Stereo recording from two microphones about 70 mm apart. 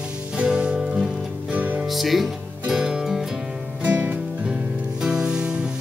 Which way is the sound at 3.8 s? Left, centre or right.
Right.